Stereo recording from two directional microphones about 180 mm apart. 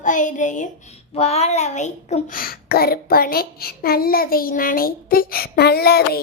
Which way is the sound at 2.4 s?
55° left (ahead or behind).